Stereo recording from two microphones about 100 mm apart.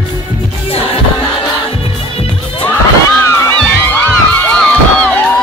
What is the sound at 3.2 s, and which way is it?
Music, 25° left (ahead or behind).